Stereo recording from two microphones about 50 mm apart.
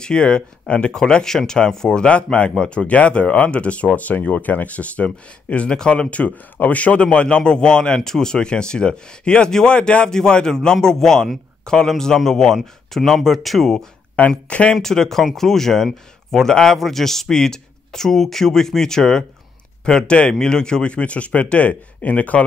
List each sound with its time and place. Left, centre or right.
0.0 s a man's voice: centre
14.5 s speech: left
14.8 s a man's voice: centre; by 22.4 s left